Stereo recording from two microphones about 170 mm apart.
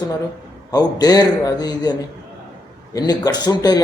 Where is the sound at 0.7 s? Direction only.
25° left (ahead or behind).